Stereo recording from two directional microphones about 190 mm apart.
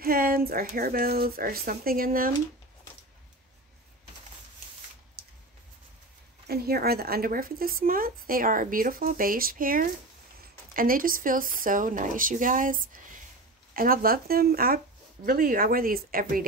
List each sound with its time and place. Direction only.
0.0 s speech: 50° right (ahead or behind)
5.2 s a sound: 55° right (ahead or behind)
6.4 s speech: 55° right (ahead or behind)